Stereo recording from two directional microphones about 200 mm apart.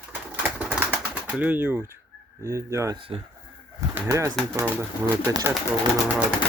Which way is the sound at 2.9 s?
25° right (ahead or behind).